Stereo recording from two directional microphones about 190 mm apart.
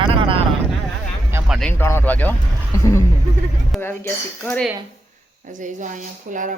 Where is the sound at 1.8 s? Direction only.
10° left (ahead or behind).